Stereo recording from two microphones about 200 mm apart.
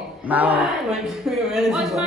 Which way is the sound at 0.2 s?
10° right (ahead or behind).